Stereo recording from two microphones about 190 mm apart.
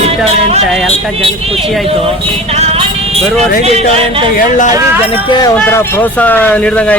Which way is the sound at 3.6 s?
35° right (ahead or behind).